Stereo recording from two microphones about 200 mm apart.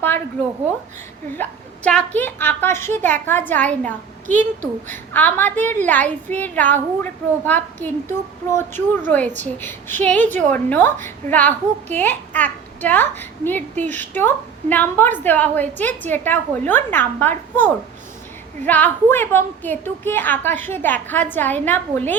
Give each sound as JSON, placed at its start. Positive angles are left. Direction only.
{"t": 1.3, "sound": "a child's voice", "side_deg": 5}
{"t": 9.0, "sound": "a child's voice", "side_deg": 10}